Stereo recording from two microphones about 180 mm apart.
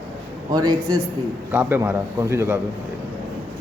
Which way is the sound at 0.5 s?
20° right (ahead or behind).